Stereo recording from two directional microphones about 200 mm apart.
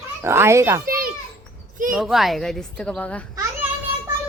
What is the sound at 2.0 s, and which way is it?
Speech, centre (ahead or behind).